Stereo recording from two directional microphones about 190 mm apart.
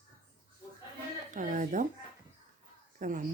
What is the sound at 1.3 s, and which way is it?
Speech, 40° right (ahead or behind).